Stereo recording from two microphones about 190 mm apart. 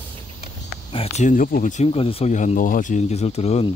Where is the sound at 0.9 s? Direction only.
30° left (ahead or behind).